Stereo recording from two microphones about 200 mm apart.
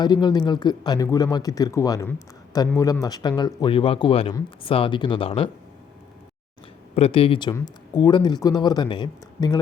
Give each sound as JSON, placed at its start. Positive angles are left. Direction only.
{"t": 0.0, "sound": "speech", "side_deg": 20}
{"t": 6.9, "sound": "speech", "side_deg": 30}